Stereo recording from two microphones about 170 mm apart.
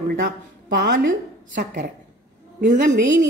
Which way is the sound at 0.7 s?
90° right.